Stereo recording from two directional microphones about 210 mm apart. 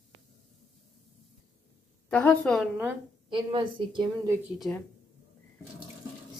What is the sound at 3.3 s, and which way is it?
A woman's voice, 25° right (ahead or behind).